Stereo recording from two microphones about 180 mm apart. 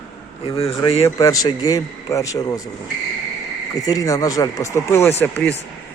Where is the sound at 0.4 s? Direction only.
30° left (ahead or behind).